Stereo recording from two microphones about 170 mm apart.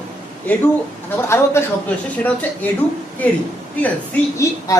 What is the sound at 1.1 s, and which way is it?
Speech, 15° left (ahead or behind).